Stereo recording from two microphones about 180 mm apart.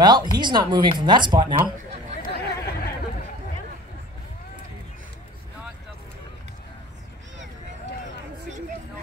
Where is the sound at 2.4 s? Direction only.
60° left (ahead or behind).